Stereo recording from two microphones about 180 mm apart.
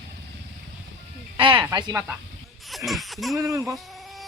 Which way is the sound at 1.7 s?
20° right (ahead or behind).